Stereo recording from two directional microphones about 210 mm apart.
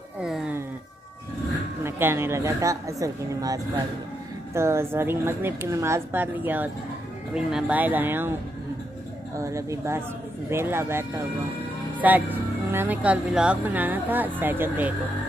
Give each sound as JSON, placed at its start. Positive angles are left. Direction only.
{"t": 0.2, "sound": "a sound", "side_deg": -5}
{"t": 1.8, "sound": "speech", "side_deg": -10}
{"t": 9.4, "sound": "speech", "side_deg": -15}